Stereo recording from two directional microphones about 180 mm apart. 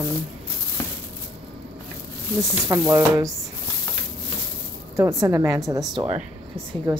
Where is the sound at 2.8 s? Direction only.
15° right (ahead or behind).